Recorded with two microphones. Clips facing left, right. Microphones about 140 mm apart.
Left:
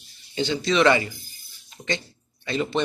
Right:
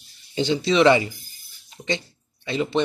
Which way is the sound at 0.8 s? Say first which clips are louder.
Right 4 dB; 20° right (ahead or behind).